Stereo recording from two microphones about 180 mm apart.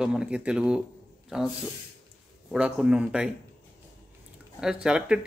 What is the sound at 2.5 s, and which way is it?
Speech, 5° right (ahead or behind).